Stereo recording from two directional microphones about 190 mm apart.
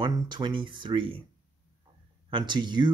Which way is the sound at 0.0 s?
25° right (ahead or behind).